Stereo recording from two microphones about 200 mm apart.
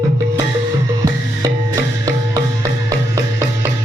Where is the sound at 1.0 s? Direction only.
15° right (ahead or behind).